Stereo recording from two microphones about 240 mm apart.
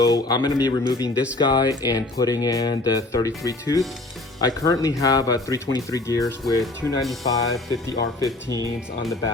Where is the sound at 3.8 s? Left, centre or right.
Centre.